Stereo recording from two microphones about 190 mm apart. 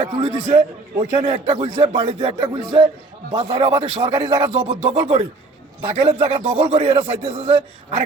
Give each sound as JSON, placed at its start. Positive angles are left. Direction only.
{"t": 0.0, "sound": "a man's voice", "side_deg": -30}